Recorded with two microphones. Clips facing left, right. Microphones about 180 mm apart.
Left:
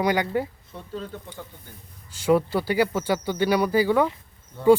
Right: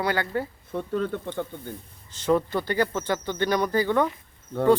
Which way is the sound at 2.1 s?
10° left (ahead or behind).